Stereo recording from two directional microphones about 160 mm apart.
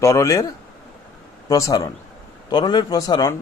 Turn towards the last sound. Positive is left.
turn(degrees=25)  # may be behind; listen again after turning